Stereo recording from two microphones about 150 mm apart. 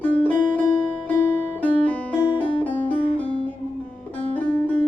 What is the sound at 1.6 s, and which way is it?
Music, 10° left (ahead or behind).